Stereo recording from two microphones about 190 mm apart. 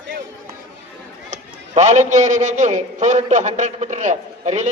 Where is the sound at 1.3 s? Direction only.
40° right (ahead or behind).